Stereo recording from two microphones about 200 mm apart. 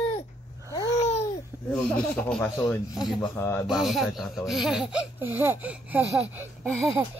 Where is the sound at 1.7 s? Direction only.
5° left (ahead or behind).